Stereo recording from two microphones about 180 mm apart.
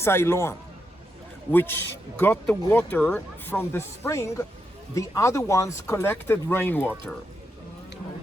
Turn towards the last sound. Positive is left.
turn(degrees=10)  # may be behind; listen again after turning